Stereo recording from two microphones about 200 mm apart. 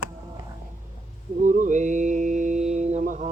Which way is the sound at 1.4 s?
40° right (ahead or behind).